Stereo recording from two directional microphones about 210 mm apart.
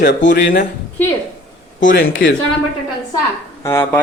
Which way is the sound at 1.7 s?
40° left (ahead or behind).